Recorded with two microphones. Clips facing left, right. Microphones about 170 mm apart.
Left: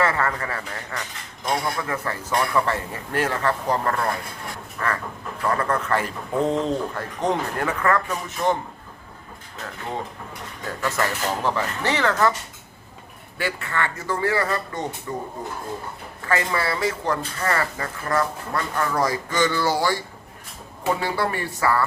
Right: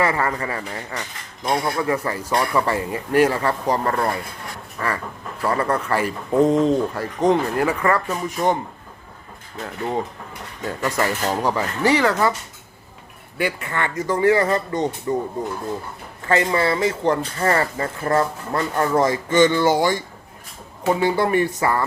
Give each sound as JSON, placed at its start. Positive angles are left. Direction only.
{"t": 0.0, "sound": "speech", "side_deg": -10}
{"t": 8.4, "sound": "speech", "side_deg": -25}
{"t": 10.8, "sound": "speech", "side_deg": -15}
{"t": 13.4, "sound": "speech", "side_deg": -20}
{"t": 16.3, "sound": "speech", "side_deg": -25}
{"t": 21.0, "sound": "speech", "side_deg": -20}